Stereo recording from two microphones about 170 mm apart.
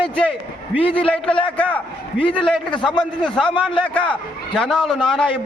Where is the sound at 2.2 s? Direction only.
30° left (ahead or behind).